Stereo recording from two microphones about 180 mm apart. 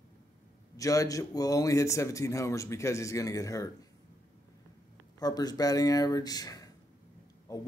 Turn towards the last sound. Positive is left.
turn(degrees=20)  # may be behind; listen again after turning